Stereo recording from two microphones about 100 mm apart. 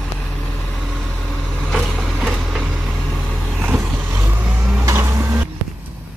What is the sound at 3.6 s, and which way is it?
Vehicle, 20° right (ahead or behind).